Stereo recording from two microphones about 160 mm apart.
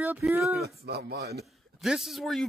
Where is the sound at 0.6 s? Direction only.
85° right.